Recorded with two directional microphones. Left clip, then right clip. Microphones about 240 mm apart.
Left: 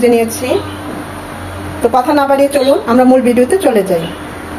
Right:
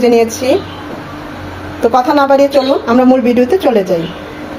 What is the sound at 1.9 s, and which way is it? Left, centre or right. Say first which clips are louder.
Speech: right 1 dB; centre.